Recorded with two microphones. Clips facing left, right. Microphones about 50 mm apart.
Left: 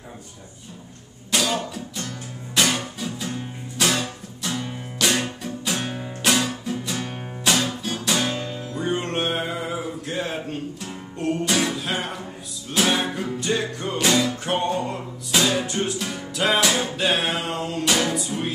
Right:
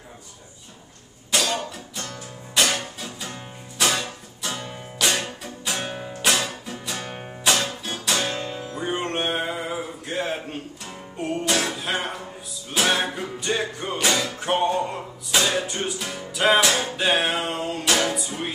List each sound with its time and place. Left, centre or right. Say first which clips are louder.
1.3 s cough: left 1 dB; centre
2.0 s music: left 2 dB; centre
6.0 s music: left 2 dB; centre